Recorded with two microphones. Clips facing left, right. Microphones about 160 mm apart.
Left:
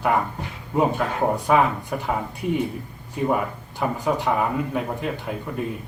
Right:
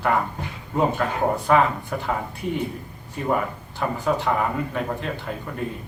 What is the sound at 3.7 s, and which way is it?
Speech, 15° left (ahead or behind).